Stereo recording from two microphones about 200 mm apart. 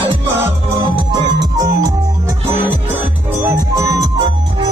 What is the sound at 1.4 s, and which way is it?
Music, 15° right (ahead or behind).